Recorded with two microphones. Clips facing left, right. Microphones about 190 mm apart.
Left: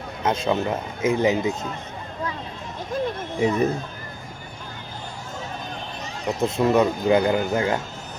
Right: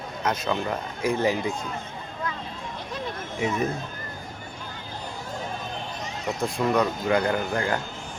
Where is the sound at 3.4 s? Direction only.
35° left (ahead or behind).